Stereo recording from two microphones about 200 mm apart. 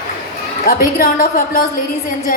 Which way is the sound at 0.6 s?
45° left (ahead or behind).